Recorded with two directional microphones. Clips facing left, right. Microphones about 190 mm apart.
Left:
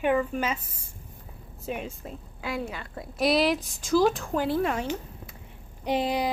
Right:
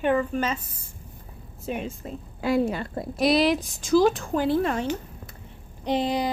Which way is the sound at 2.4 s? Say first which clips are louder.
Right 9 dB; 35° right (ahead or behind).